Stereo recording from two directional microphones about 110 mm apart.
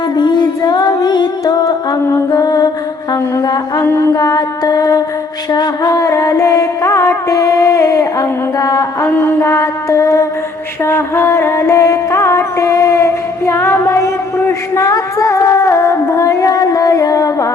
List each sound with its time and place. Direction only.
0.2 s music: 40° left (ahead or behind)
3.1 s a sound: 35° left (ahead or behind)
3.8 s mantra: 25° left (ahead or behind)
5.5 s music: 35° left (ahead or behind)
9.0 s mantra: 25° left (ahead or behind)
10.8 s music: 25° left (ahead or behind)